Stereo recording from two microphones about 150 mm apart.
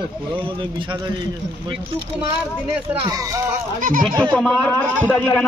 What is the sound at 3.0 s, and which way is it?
Speech, 25° right (ahead or behind).